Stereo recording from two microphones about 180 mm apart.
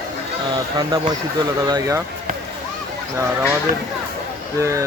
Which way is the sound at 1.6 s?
20° right (ahead or behind).